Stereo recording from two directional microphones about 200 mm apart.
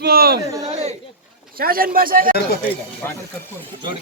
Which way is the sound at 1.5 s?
45° right (ahead or behind).